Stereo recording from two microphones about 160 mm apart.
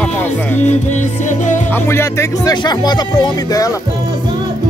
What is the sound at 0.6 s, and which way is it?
Music, 45° left (ahead or behind).